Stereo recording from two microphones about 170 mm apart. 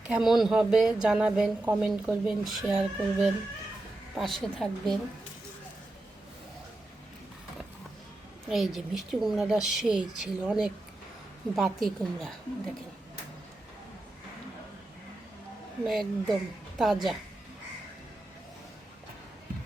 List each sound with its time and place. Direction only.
0.1 s a woman's voice: centre (ahead or behind)
8.4 s a woman's voice: centre (ahead or behind)
15.9 s a woman's voice: centre (ahead or behind)